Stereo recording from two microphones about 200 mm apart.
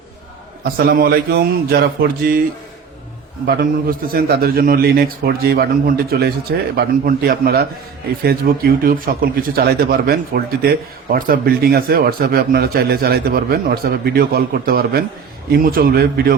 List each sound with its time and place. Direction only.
0.6 s speech: 50° right (ahead or behind)
3.4 s speech: 50° right (ahead or behind)